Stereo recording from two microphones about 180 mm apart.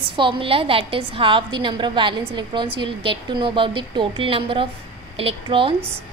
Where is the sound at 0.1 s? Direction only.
25° right (ahead or behind).